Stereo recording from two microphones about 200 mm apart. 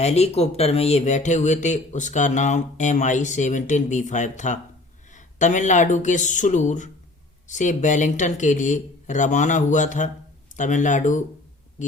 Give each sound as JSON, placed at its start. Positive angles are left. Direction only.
{"t": 0.0, "sound": "speech", "side_deg": 30}